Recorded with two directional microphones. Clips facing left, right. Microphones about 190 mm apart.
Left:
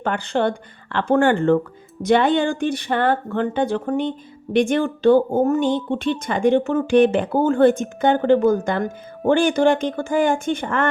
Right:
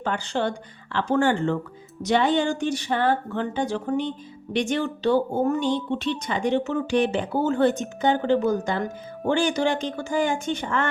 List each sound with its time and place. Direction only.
0.0 s speech: 55° left (ahead or behind)